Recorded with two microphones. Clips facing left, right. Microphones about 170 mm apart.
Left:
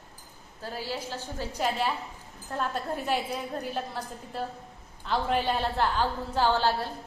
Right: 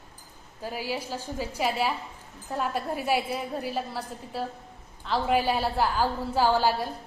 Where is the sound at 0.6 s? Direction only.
10° right (ahead or behind).